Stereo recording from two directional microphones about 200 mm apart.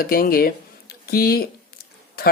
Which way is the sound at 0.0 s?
45° left (ahead or behind).